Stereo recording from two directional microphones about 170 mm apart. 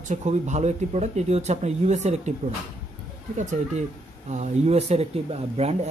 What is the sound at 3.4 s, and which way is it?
Speech, 45° right (ahead or behind).